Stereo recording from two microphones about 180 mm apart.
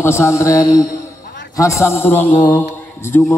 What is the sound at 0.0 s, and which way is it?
A man's voice, 15° left (ahead or behind).